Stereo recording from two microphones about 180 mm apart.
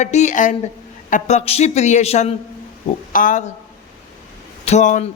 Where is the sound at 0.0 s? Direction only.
40° left (ahead or behind).